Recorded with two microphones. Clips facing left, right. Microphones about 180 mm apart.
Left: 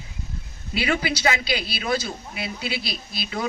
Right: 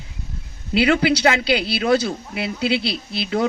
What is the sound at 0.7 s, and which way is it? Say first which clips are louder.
A man's voice: right 8 dB; 65° right (ahead or behind).